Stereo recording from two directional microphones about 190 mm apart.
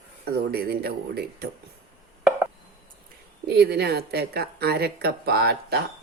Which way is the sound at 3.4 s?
60° right (ahead or behind).